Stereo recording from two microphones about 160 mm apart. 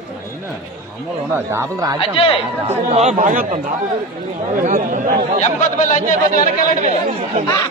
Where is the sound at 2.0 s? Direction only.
35° left (ahead or behind).